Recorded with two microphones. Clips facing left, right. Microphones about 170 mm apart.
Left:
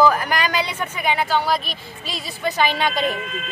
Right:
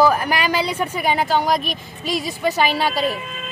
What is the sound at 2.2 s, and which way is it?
Speech, 10° right (ahead or behind).